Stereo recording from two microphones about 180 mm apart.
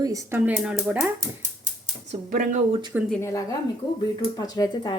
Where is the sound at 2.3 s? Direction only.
45° right (ahead or behind).